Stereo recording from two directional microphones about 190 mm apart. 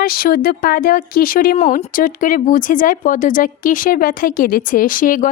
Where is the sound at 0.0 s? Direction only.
50° left (ahead or behind).